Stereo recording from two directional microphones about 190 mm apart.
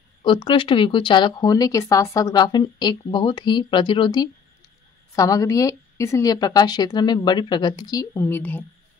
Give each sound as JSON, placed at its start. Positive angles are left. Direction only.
{"t": 0.2, "sound": "speech", "side_deg": 25}